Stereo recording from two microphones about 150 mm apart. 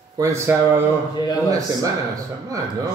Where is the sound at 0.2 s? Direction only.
20° right (ahead or behind).